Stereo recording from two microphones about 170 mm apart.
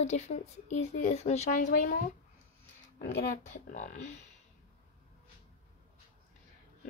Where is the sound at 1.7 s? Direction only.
55° left (ahead or behind).